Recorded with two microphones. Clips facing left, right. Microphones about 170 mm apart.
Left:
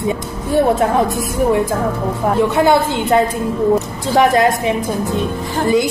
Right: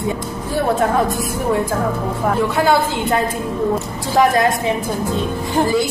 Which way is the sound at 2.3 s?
25° left (ahead or behind).